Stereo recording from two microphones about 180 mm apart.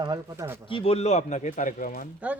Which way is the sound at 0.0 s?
20° right (ahead or behind).